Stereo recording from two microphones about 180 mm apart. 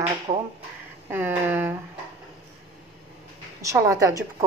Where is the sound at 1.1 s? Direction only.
10° right (ahead or behind).